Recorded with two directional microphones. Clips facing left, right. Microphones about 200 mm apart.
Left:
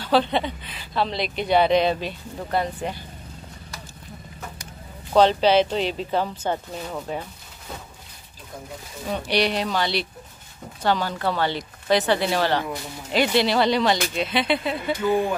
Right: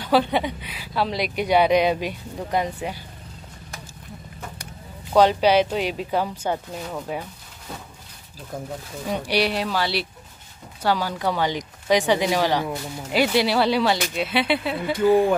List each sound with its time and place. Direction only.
0.0 s speech: 10° right (ahead or behind)
5.1 s speech: 10° right (ahead or behind)
9.0 s speech: 10° right (ahead or behind)